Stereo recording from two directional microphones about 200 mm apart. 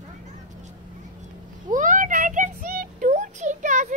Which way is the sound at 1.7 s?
40° right (ahead or behind).